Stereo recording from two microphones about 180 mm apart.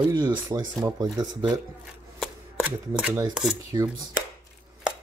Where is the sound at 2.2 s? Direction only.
5° right (ahead or behind).